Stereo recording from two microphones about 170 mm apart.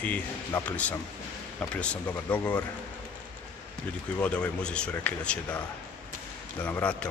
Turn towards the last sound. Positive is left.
turn(degrees=5)  # may be behind; listen again after turning